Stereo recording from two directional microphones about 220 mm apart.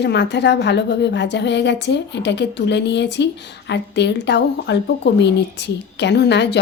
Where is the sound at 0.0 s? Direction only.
50° left (ahead or behind).